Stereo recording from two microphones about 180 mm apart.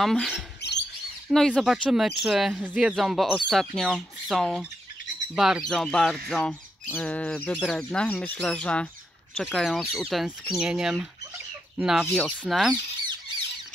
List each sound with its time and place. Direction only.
0.0 s speech: centre (ahead or behind)
0.6 s bird: 70° left (ahead or behind)
1.3 s speech: centre (ahead or behind)